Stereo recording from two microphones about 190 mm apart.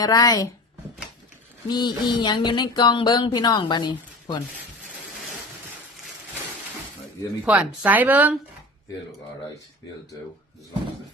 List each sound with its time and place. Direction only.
0.0 s speech: 20° left (ahead or behind)
1.6 s speech: 20° left (ahead or behind)
7.4 s a woman's voice: 5° right (ahead or behind)